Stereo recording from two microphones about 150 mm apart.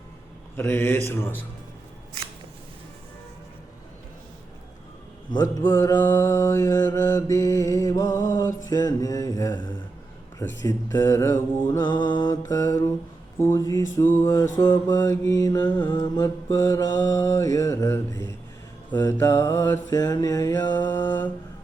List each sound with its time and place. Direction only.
0.5 s speech: 15° left (ahead or behind)
5.4 s speech: 15° left (ahead or behind)
6.0 s mantra: 15° left (ahead or behind)
11.8 s mantra: 30° left (ahead or behind)
13.4 s speech: 20° left (ahead or behind)
14.2 s mantra: 20° left (ahead or behind)
20.8 s speech: 15° left (ahead or behind)